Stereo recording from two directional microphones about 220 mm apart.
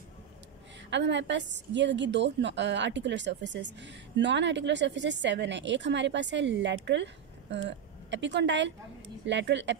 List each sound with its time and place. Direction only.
0.8 s a woman's voice: 55° right (ahead or behind)